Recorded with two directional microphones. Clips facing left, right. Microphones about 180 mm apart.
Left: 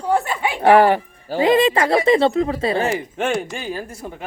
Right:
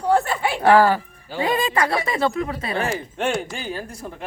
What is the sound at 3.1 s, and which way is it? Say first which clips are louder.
Speech: left 2 dB; centre (ahead or behind).